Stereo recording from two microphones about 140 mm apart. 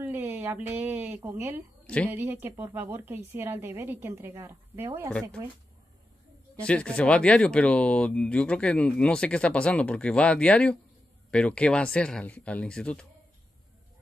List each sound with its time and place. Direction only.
0.0 s a woman's voice: 15° right (ahead or behind)
6.6 s speech: 10° left (ahead or behind)